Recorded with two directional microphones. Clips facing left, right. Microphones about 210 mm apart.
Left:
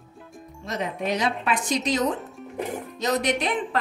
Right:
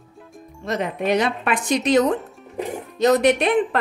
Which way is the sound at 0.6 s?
60° right (ahead or behind).